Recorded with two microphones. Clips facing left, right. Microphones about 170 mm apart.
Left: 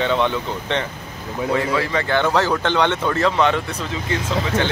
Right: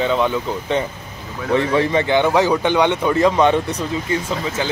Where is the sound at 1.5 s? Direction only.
20° right (ahead or behind).